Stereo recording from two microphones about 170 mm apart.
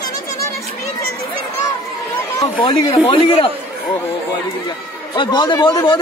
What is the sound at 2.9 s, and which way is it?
Speech, 30° left (ahead or behind).